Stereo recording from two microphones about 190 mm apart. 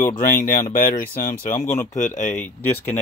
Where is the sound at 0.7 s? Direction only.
50° left (ahead or behind).